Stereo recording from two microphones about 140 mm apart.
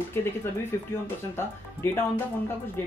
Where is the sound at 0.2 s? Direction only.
15° left (ahead or behind).